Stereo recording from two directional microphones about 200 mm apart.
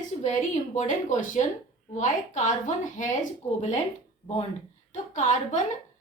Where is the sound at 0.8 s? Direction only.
40° left (ahead or behind).